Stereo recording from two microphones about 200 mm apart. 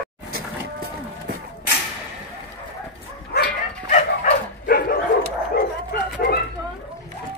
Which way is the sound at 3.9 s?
40° left (ahead or behind).